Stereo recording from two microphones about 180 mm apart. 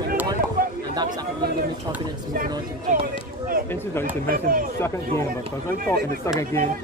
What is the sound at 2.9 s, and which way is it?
Speech, 40° right (ahead or behind).